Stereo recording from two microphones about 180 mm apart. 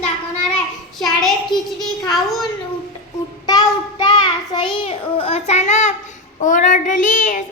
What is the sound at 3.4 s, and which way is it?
A child's voice, 20° left (ahead or behind).